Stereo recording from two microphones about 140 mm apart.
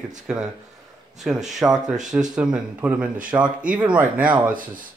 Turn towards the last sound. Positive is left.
turn(degrees=-10)  # may be behind; listen again after turning